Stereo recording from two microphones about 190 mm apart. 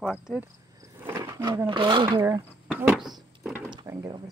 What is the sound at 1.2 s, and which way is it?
Speech, 20° right (ahead or behind).